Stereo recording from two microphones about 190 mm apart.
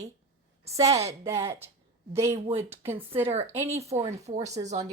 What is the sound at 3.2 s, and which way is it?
Speech, 35° right (ahead or behind).